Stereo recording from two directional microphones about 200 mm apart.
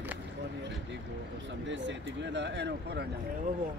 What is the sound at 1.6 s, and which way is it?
Speech, 65° right (ahead or behind).